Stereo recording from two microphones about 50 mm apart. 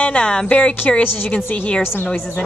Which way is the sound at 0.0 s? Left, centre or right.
Left.